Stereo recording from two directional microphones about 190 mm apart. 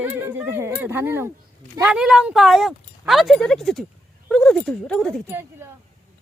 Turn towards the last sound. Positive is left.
turn(degrees=-10)  # may be behind; listen again after turning